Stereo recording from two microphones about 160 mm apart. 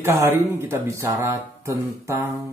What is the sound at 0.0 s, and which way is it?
Speech, 15° right (ahead or behind).